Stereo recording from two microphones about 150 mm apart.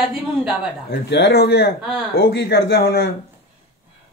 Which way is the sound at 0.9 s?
90° left.